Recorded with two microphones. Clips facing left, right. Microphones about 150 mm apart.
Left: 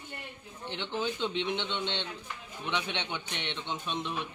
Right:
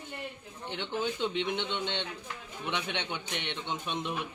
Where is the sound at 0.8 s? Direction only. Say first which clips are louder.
Even; 15° right (ahead or behind).